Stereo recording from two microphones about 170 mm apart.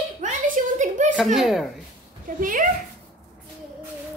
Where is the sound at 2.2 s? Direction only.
55° right (ahead or behind).